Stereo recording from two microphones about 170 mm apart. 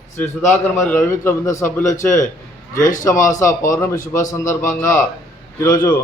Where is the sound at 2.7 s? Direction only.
50° left (ahead or behind).